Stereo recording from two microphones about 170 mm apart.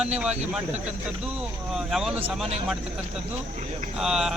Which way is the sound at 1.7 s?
Centre (ahead or behind).